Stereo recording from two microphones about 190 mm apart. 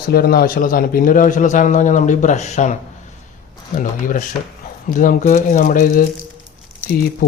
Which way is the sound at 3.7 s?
45° left (ahead or behind).